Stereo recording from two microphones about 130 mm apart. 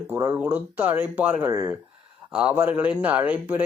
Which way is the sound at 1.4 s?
25° right (ahead or behind).